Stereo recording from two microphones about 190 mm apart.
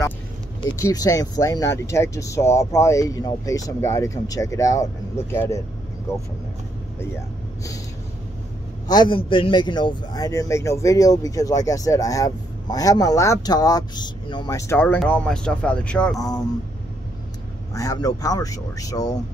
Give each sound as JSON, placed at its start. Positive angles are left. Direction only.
{"t": 0.6, "sound": "speech", "side_deg": 20}
{"t": 8.8, "sound": "speech", "side_deg": 25}
{"t": 16.2, "sound": "speech", "side_deg": 20}
{"t": 17.7, "sound": "speech", "side_deg": 20}